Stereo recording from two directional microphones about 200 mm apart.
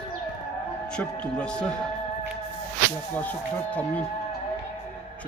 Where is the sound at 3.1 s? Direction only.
5° left (ahead or behind).